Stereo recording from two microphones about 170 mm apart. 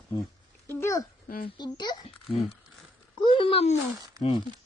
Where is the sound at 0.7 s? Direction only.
15° left (ahead or behind).